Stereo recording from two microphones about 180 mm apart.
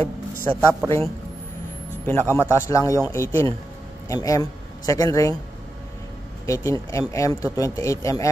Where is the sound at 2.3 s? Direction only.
15° left (ahead or behind).